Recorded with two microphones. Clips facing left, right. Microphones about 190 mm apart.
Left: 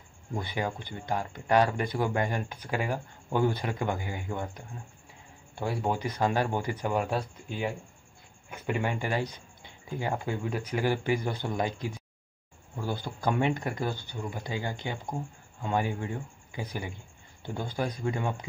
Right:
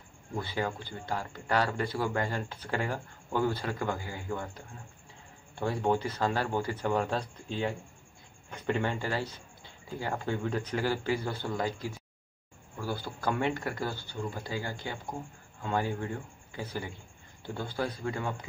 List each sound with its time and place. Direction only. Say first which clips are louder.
0.4 s speech: even; 15° left (ahead or behind)